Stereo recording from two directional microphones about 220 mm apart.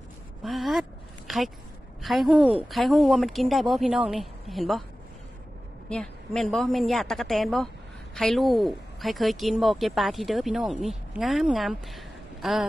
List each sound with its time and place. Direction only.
0.4 s a sound: centre (ahead or behind)
2.0 s a woman's voice: centre (ahead or behind)
2.3 s a woman's voice: 25° right (ahead or behind)
2.7 s a woman's voice: centre (ahead or behind)
5.9 s a woman's voice: centre (ahead or behind)